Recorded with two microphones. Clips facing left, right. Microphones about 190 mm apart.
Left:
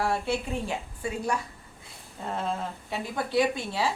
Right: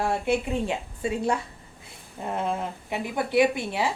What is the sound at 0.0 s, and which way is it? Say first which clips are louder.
A woman's voice: right 3 dB; 20° right (ahead or behind).